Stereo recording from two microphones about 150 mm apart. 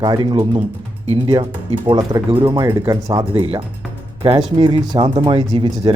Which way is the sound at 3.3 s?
40° right (ahead or behind).